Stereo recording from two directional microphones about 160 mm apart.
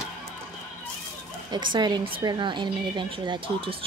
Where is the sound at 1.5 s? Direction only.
30° right (ahead or behind).